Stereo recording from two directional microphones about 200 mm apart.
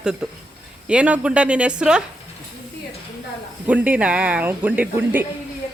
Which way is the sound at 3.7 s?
5° right (ahead or behind).